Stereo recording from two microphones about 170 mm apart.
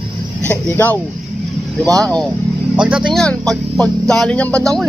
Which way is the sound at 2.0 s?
5° left (ahead or behind).